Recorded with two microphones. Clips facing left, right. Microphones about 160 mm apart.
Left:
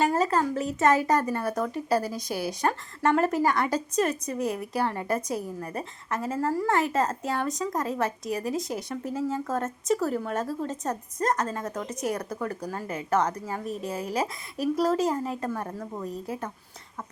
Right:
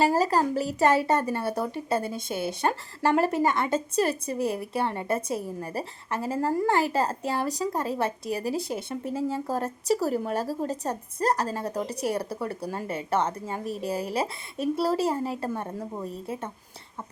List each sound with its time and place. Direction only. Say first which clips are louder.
0.0 s a woman's voice: right 1 dB; 35° right (ahead or behind)
15.4 s speech: even; 20° right (ahead or behind)